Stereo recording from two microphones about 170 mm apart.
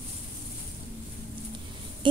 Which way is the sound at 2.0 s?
30° right (ahead or behind).